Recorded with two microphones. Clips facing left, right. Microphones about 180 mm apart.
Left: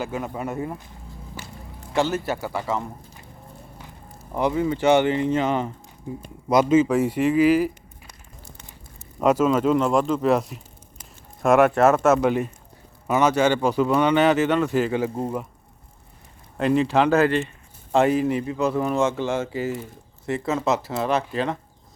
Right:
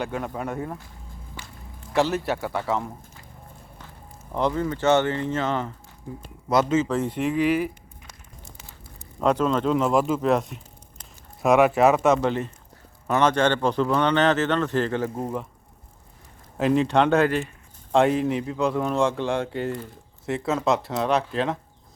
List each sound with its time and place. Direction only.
0.0 s speech: 5° left (ahead or behind)
2.0 s speech: centre (ahead or behind)
4.4 s speech: 10° left (ahead or behind)
12.2 s speech: 15° left (ahead or behind)
16.6 s speech: centre (ahead or behind)